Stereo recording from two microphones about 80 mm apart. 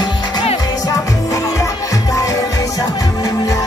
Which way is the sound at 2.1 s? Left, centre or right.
Left.